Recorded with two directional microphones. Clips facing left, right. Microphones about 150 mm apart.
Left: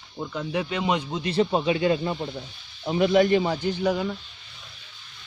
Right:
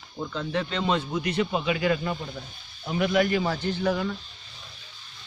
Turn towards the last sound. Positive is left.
turn(degrees=15)  # may be behind; listen again after turning